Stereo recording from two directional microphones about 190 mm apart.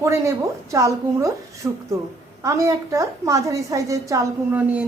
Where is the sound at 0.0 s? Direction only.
15° right (ahead or behind).